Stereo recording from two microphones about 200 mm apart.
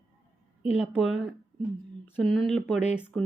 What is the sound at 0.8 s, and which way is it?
A woman's voice, 5° right (ahead or behind).